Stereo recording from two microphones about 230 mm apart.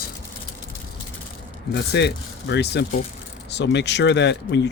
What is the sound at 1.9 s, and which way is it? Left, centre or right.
Speech, left.